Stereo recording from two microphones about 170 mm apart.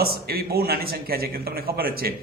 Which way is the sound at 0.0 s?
65° right (ahead or behind).